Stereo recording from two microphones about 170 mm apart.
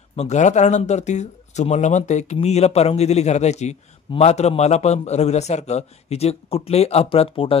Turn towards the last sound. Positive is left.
turn(degrees=35)  # may be behind; listen again after turning